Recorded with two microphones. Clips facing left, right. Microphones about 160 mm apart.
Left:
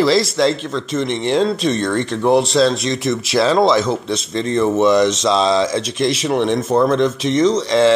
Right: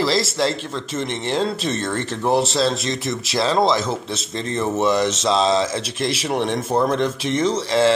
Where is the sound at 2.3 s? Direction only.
5° right (ahead or behind).